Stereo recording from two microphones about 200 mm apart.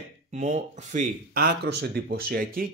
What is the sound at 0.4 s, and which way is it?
Speech, 40° right (ahead or behind).